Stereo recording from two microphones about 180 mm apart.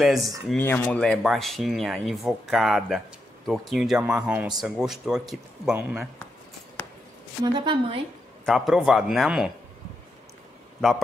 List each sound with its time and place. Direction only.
0.0 s speech: centre (ahead or behind)
0.5 s speech: 10° left (ahead or behind); by 6.0 s 10° right (ahead or behind)
7.4 s a woman's voice: 25° right (ahead or behind)
8.5 s speech: centre (ahead or behind)